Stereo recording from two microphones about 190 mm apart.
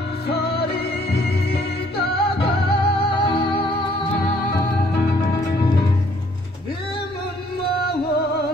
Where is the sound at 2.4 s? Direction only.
25° left (ahead or behind).